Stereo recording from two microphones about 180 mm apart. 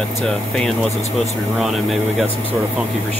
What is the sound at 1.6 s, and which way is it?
Speech, centre (ahead or behind).